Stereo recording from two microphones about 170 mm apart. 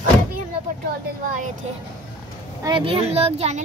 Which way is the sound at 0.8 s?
55° right (ahead or behind).